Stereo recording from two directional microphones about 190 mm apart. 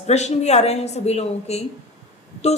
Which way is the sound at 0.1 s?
35° left (ahead or behind).